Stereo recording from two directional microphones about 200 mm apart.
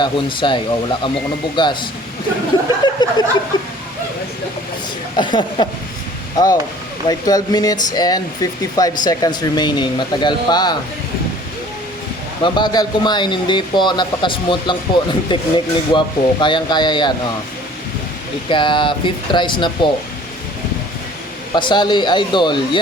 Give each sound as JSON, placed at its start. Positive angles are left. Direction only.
{"t": 0.0, "sound": "speech", "side_deg": 25}
{"t": 2.8, "sound": "chuckle", "side_deg": 20}
{"t": 5.1, "sound": "speech", "side_deg": 25}
{"t": 12.4, "sound": "speech", "side_deg": 20}
{"t": 18.4, "sound": "speech", "side_deg": 25}
{"t": 21.5, "sound": "speech", "side_deg": 20}